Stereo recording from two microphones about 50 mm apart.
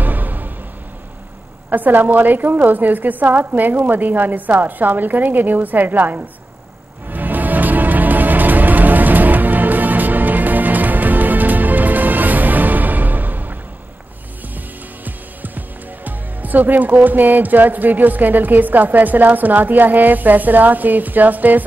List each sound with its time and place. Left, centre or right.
0.0 s music: right
1.7 s a woman's voice: right
7.1 s music: right
15.0 s speech: right